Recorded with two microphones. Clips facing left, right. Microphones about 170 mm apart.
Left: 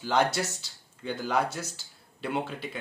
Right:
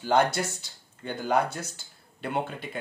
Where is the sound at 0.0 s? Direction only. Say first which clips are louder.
Right 2 dB; 55° right (ahead or behind).